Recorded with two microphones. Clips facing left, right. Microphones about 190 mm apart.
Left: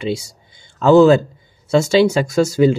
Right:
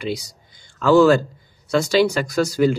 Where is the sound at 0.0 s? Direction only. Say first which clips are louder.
Left 4 dB; 25° left (ahead or behind).